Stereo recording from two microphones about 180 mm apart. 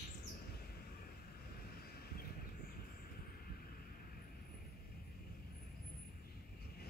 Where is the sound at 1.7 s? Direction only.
60° left (ahead or behind).